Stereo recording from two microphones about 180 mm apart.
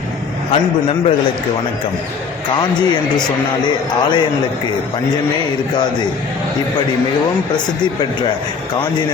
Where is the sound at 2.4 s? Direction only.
25° left (ahead or behind).